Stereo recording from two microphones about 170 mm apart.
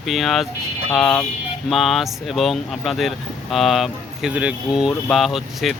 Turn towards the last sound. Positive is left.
turn(degrees=0)  # may be behind; listen again after turning